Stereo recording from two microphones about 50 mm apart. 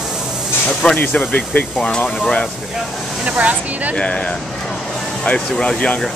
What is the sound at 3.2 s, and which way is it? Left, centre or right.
Speech, right.